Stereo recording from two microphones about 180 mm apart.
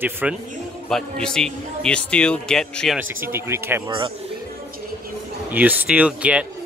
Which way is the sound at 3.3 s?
15° right (ahead or behind).